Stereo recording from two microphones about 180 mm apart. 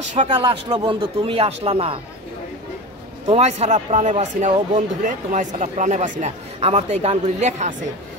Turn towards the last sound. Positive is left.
turn(degrees=-40)  # may be behind; listen again after turning